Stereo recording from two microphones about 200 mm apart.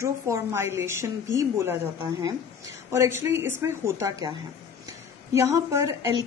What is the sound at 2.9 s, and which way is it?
A woman's voice, 10° right (ahead or behind).